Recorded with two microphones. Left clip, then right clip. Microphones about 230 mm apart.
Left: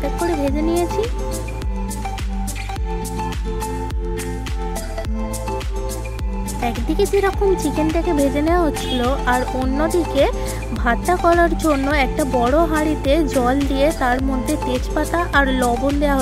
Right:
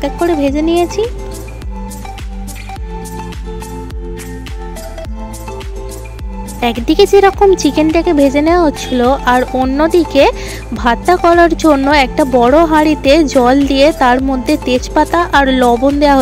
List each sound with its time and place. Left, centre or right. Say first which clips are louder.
0.0 s speech: right 7 dB; right
6.6 s speech: right 10 dB; right